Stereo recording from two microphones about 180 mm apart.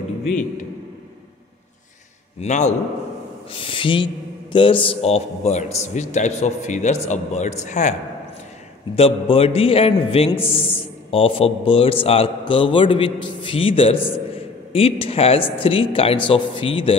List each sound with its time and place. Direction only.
2.4 s a man's voice: 40° left (ahead or behind)
3.5 s a man's voice: 30° left (ahead or behind)
8.9 s a man's voice: 30° left (ahead or behind)